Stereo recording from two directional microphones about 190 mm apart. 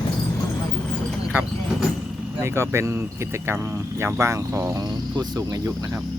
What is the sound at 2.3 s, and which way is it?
Speech, 15° right (ahead or behind).